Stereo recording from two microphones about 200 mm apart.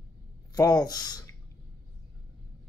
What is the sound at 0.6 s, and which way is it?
Speech, 20° left (ahead or behind).